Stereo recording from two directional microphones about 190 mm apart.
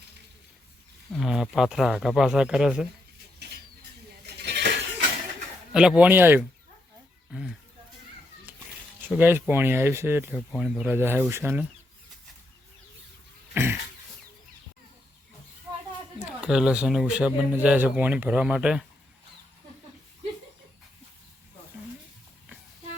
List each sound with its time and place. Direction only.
1.2 s speech: 5° right (ahead or behind)
4.4 s dishes: 60° right (ahead or behind)
5.7 s speech: 5° right (ahead or behind)
9.0 s speech: 10° right (ahead or behind)
13.5 s throat clearing: 10° right (ahead or behind)
16.4 s speech: 5° right (ahead or behind)